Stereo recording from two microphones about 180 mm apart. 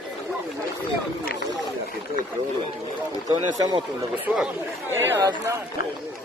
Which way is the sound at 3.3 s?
20° right (ahead or behind).